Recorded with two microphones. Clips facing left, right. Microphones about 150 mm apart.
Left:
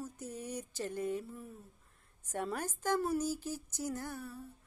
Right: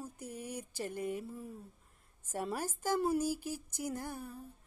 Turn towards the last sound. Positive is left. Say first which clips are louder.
# even
turn(degrees=-10)  # may be behind; listen again after turning